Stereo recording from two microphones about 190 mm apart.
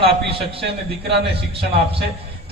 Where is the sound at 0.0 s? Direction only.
30° right (ahead or behind).